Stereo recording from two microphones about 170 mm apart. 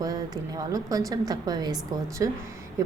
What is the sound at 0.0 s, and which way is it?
Speech, 20° right (ahead or behind).